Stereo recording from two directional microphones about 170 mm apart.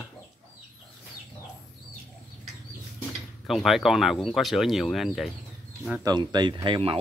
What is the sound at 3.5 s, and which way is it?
Speech, centre (ahead or behind).